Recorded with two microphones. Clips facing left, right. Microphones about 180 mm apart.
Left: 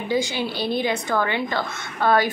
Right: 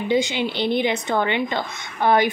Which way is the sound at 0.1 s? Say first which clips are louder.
Right 2 dB; 20° right (ahead or behind).